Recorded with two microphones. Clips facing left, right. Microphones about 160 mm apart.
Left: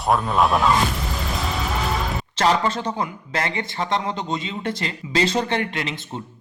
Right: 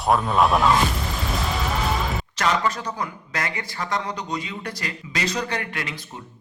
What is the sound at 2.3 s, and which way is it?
Speech, 30° left (ahead or behind).